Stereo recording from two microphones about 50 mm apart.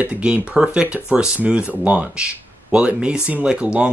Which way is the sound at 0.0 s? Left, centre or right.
Right.